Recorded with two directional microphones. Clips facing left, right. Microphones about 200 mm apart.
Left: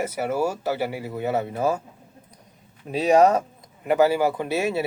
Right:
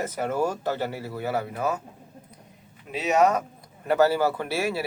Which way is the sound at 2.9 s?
35° left (ahead or behind).